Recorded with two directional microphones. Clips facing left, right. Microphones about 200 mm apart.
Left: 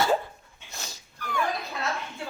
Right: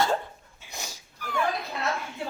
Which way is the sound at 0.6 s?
10° right (ahead or behind).